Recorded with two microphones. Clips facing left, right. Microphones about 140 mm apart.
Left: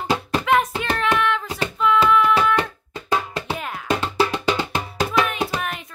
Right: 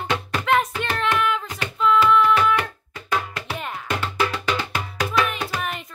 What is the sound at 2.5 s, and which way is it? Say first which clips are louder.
Music: left 2 dB; 30° left (ahead or behind).